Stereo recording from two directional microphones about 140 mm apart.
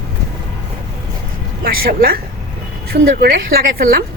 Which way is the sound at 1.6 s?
90° right.